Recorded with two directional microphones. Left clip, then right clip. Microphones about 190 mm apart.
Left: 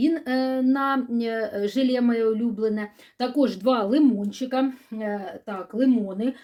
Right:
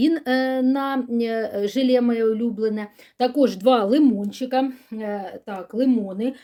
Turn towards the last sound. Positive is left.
turn(degrees=-30)  # may be behind; listen again after turning